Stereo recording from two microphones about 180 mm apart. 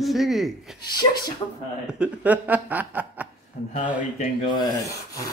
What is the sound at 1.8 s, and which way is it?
Speech, 5° right (ahead or behind).